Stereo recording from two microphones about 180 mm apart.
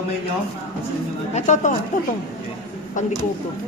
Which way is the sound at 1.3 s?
40° left (ahead or behind).